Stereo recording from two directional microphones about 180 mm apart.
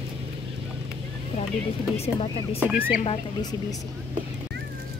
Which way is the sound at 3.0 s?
20° left (ahead or behind).